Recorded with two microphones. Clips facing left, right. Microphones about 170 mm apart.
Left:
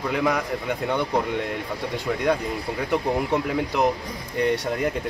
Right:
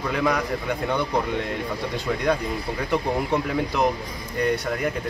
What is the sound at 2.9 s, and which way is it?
Speech, 15° left (ahead or behind).